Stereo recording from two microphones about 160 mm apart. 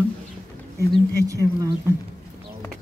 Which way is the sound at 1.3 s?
20° right (ahead or behind).